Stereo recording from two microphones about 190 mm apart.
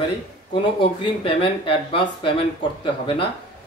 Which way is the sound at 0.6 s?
25° left (ahead or behind).